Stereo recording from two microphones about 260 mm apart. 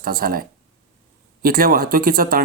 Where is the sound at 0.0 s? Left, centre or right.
Right.